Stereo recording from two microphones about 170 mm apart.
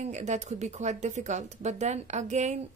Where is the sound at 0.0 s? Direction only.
45° right (ahead or behind).